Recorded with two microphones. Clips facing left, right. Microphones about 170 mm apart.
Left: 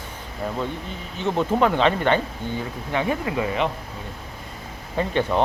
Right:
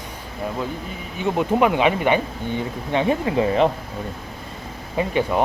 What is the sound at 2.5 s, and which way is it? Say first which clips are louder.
Speech: right 4 dB; 20° right (ahead or behind).